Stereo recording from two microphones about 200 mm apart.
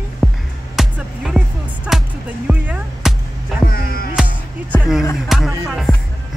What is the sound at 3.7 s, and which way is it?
Music, 50° left (ahead or behind).